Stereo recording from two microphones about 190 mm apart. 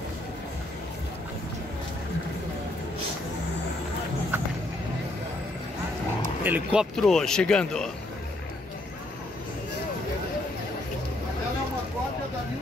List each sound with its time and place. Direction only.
6.4 s speech: 5° right (ahead or behind)